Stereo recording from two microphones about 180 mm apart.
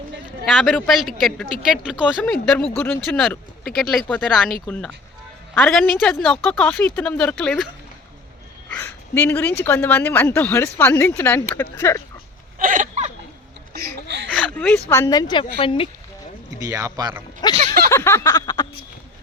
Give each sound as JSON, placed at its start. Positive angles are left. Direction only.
{"t": 0.5, "sound": "speech", "side_deg": 5}
{"t": 2.2, "sound": "speech", "side_deg": 5}
{"t": 5.6, "sound": "speech", "side_deg": 5}
{"t": 8.7, "sound": "a woman's voice", "side_deg": 10}
{"t": 12.5, "sound": "hiccup", "side_deg": -45}
{"t": 13.7, "sound": "a sound", "side_deg": -70}
{"t": 14.3, "sound": "a woman's voice", "side_deg": 5}
{"t": 16.6, "sound": "speech", "side_deg": -20}
{"t": 17.4, "sound": "a sound", "side_deg": 20}